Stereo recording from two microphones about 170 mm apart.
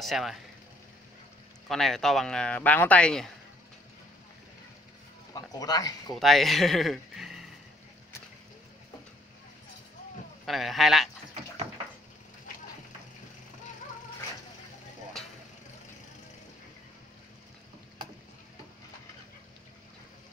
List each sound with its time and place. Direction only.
0.0 s speech: centre (ahead or behind)
1.7 s speech: centre (ahead or behind)
5.3 s speech: 20° left (ahead or behind)
6.1 s speech: centre (ahead or behind)
10.4 s speech: centre (ahead or behind)